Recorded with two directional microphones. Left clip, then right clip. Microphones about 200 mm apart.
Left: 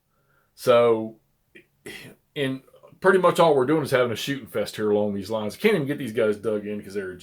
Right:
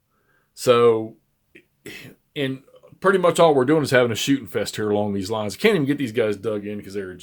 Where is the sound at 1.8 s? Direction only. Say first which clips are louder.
Right 1 dB; 25° right (ahead or behind).